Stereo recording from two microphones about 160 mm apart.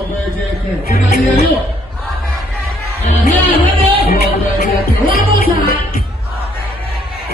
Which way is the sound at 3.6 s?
65° left (ahead or behind).